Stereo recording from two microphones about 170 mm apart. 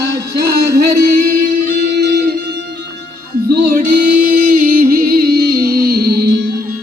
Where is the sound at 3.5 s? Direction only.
60° right (ahead or behind).